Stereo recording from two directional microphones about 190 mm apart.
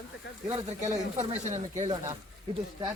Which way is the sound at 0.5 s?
35° right (ahead or behind).